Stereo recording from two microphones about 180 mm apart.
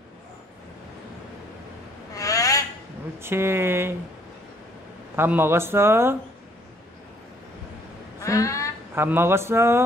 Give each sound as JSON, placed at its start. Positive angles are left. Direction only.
{"t": 2.1, "sound": "a sound", "side_deg": 20}
{"t": 3.2, "sound": "speech", "side_deg": -15}
{"t": 5.1, "sound": "speech", "side_deg": -10}
{"t": 8.2, "sound": "speech", "side_deg": 15}
{"t": 8.9, "sound": "speech", "side_deg": -10}